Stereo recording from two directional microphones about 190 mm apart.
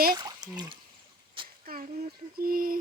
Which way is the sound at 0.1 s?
20° right (ahead or behind).